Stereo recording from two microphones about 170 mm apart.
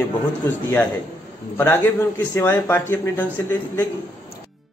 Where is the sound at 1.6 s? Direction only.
15° left (ahead or behind).